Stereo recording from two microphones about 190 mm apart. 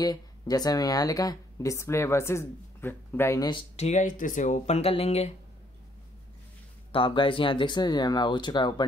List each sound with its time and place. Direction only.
0.0 s speech: 20° left (ahead or behind)
6.9 s speech: 25° left (ahead or behind)